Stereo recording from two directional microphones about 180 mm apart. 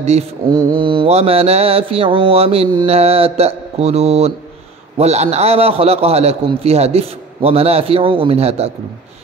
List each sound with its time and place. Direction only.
0.5 s mantra: 20° right (ahead or behind)